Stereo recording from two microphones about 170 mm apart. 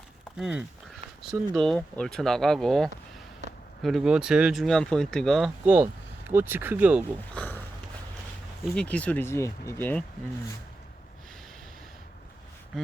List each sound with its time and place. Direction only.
0.3 s speech: 5° right (ahead or behind)
3.4 s a sound: 40° right (ahead or behind)
3.8 s speech: centre (ahead or behind)
5.6 s speech: 10° right (ahead or behind)
7.3 s a sound: 10° left (ahead or behind)
8.7 s speech: 5° left (ahead or behind)